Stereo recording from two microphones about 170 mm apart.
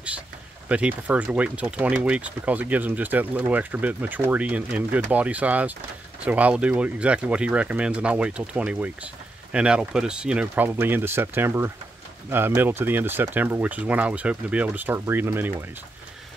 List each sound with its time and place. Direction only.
0.7 s speech: 5° right (ahead or behind)